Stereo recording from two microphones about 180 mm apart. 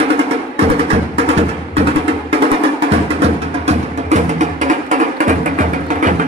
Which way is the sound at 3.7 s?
40° right (ahead or behind).